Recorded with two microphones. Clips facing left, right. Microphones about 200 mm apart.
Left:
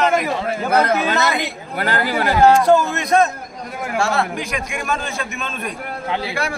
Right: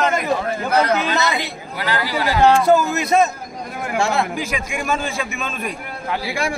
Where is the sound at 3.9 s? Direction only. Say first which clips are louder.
Even; 20° right (ahead or behind).